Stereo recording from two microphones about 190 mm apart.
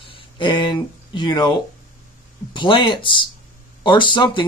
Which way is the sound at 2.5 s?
25° left (ahead or behind).